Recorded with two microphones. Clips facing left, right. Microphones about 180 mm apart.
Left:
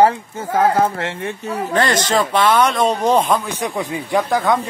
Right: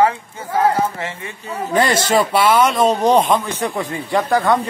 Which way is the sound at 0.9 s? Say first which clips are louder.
Left 4 dB; 70° left (ahead or behind).